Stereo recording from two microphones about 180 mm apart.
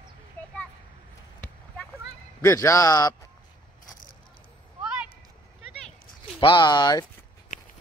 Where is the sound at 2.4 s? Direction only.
15° left (ahead or behind).